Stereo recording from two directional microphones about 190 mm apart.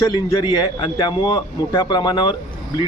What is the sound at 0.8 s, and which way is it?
Speech, 25° left (ahead or behind).